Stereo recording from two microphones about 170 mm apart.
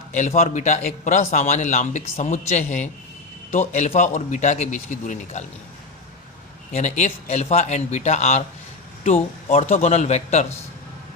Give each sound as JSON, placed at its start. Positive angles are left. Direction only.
{"t": 0.1, "sound": "a man's voice", "side_deg": 45}
{"t": 6.7, "sound": "speech", "side_deg": 40}
{"t": 9.5, "sound": "speech", "side_deg": 35}